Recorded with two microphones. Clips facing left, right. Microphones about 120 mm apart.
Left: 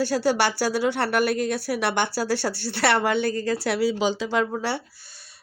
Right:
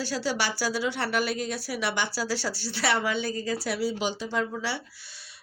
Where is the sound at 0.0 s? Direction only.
55° left (ahead or behind); by 4.4 s 85° left.